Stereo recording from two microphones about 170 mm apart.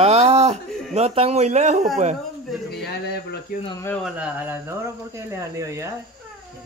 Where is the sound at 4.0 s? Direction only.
5° right (ahead or behind).